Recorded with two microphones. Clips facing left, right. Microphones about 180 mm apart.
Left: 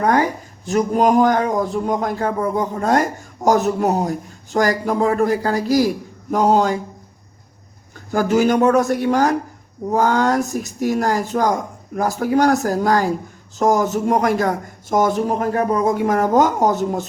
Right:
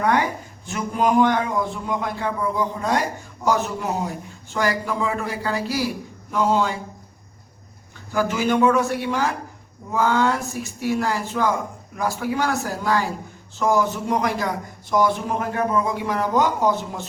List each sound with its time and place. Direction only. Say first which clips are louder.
0.0 s speech: left 4 dB; 40° left (ahead or behind)
8.1 s speech: left 5 dB; 45° left (ahead or behind)